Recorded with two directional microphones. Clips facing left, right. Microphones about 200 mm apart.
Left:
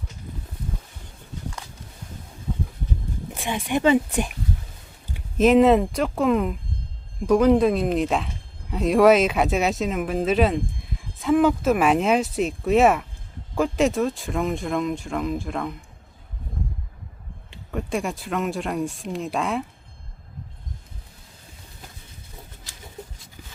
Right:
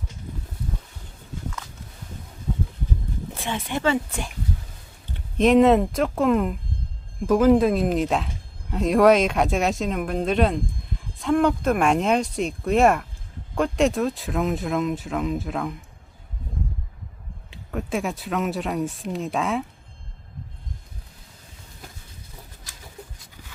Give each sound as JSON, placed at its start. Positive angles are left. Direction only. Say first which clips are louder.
{"t": 3.3, "sound": "a sound", "louder": "left 1 dB", "side_deg": 15}
{"t": 3.7, "sound": "speech", "louder": "left 5 dB", "side_deg": 15}
{"t": 5.1, "sound": "speech", "louder": "even", "side_deg": 5}
{"t": 17.5, "sound": "speech", "louder": "even", "side_deg": 0}